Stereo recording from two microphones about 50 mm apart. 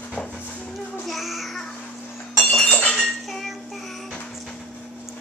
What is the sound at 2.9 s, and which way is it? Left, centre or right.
Cutlery, centre.